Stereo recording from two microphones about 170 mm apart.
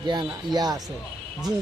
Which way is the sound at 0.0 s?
25° right (ahead or behind).